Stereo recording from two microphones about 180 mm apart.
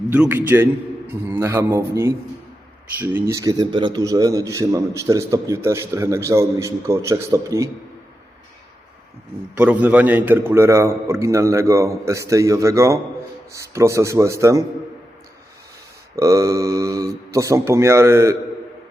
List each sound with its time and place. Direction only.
0.1 s a man's voice: 10° right (ahead or behind)
9.6 s a man's voice: 5° right (ahead or behind)
16.1 s a man's voice: 15° right (ahead or behind)